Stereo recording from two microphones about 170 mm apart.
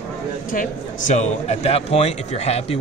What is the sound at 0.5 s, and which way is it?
Speech, 45° left (ahead or behind).